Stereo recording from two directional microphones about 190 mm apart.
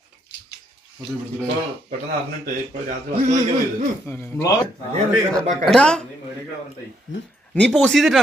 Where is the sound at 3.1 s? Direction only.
40° right (ahead or behind).